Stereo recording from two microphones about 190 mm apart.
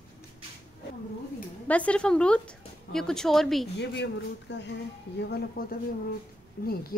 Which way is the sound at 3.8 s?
70° left (ahead or behind).